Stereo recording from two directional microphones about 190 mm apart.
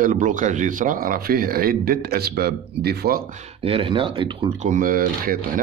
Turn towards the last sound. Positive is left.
turn(degrees=-50)  # may be behind; listen again after turning